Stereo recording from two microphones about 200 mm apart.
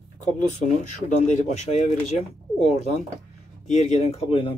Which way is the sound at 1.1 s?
35° left (ahead or behind).